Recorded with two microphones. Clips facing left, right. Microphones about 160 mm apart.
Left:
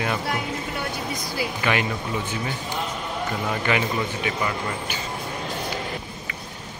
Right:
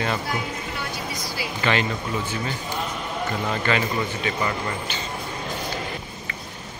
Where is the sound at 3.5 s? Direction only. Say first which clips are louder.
Even; 15° left (ahead or behind).